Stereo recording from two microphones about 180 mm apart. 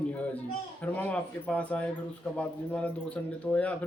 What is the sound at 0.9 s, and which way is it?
Speech, 10° left (ahead or behind).